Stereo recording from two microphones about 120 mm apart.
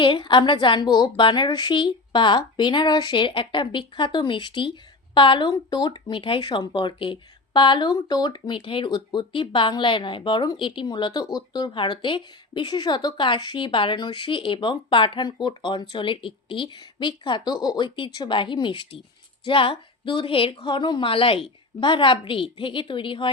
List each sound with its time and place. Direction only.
0.0 s a woman's voice: 40° left (ahead or behind)